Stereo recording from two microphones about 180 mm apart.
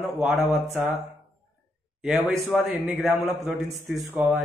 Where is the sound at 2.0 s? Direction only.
5° right (ahead or behind).